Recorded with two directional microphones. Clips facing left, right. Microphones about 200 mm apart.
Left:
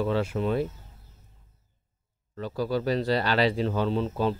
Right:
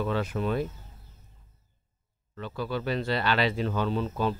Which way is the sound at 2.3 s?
40° left (ahead or behind).